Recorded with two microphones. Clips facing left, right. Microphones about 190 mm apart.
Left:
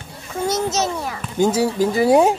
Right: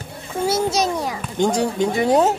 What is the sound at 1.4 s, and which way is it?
Speech, 5° left (ahead or behind).